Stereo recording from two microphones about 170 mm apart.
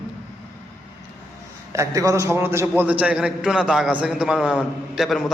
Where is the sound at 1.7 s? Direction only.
20° right (ahead or behind); by 5.2 s centre (ahead or behind).